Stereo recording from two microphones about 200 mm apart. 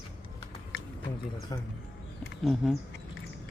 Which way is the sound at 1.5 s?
20° left (ahead or behind).